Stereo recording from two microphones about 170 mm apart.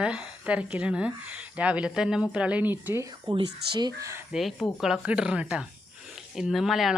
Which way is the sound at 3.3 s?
25° right (ahead or behind).